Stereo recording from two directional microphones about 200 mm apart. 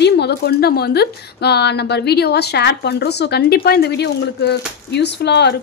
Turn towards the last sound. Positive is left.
turn(degrees=60)  # may be behind; listen again after turning